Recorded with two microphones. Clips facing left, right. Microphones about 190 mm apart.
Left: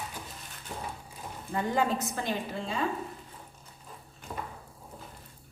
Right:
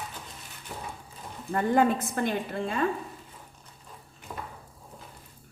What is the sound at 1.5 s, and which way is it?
A woman's voice, 55° right (ahead or behind).